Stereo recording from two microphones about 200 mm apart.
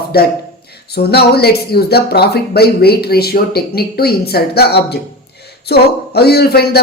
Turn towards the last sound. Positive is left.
turn(degrees=50)  # may be behind; listen again after turning